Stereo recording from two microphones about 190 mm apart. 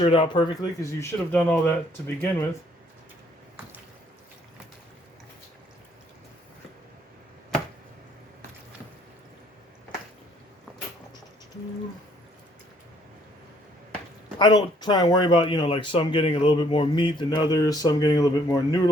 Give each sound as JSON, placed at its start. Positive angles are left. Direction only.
{"t": 0.0, "sound": "speech", "side_deg": 30}
{"t": 14.3, "sound": "speech", "side_deg": 20}